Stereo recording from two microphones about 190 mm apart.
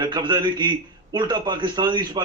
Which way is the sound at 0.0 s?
25° right (ahead or behind).